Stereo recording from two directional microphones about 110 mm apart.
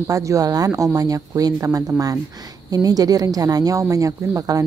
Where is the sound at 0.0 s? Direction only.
30° right (ahead or behind).